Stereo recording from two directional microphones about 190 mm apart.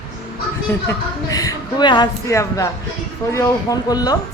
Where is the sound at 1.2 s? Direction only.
20° left (ahead or behind).